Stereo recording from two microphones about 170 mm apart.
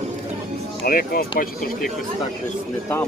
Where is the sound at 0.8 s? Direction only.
60° left (ahead or behind).